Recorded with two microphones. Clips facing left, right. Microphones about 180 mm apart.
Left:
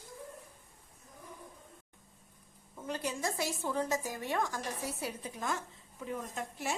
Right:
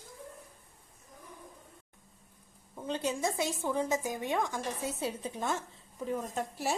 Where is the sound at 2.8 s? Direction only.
25° right (ahead or behind).